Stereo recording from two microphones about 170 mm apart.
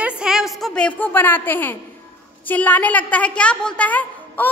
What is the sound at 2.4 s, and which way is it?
A woman's voice, 10° left (ahead or behind).